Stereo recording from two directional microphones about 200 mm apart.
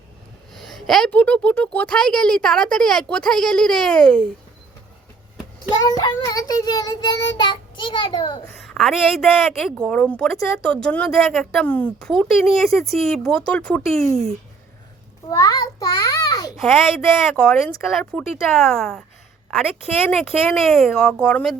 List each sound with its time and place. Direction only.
0.5 s a woman's voice: centre (ahead or behind)
5.6 s child singing: 20° left (ahead or behind)
8.6 s a woman's voice: centre (ahead or behind)
15.3 s a child's voice: 20° left (ahead or behind)
17.3 s a woman's voice: 5° left (ahead or behind)
20.1 s a woman's voice: 5° left (ahead or behind)